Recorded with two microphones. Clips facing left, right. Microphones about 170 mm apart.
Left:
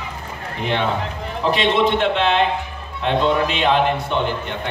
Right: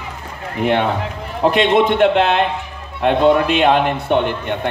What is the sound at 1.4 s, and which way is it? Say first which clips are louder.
A man's voice: right 4 dB; 55° right (ahead or behind).